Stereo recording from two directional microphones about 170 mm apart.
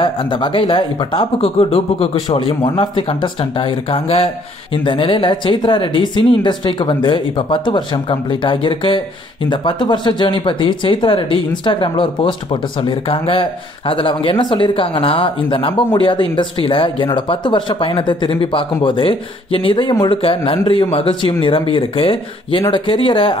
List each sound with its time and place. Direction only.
0.0 s speech: 30° left (ahead or behind)